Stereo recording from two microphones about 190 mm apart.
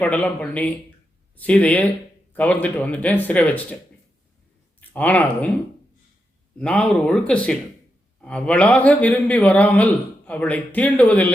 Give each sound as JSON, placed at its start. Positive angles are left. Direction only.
{"t": 0.0, "sound": "a man's voice", "side_deg": 5}
{"t": 4.8, "sound": "speech", "side_deg": 10}
{"t": 6.6, "sound": "a man's voice", "side_deg": 5}